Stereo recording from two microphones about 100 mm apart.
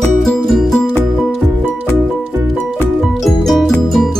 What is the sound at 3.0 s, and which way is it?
Music, centre (ahead or behind).